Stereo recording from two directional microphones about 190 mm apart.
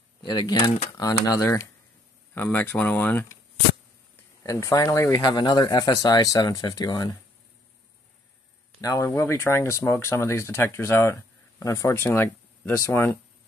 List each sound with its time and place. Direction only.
0.2 s speech: 20° left (ahead or behind)
4.4 s speech: 15° left (ahead or behind)
8.8 s speech: 15° left (ahead or behind)